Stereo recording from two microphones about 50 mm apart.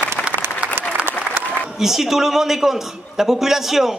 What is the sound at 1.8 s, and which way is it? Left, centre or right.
A man's voice, centre.